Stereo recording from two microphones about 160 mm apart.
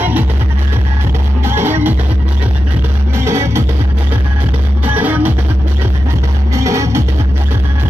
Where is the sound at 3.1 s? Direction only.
15° right (ahead or behind).